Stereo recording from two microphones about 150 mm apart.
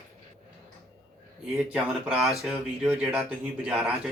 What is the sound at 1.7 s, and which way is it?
Speech, centre (ahead or behind).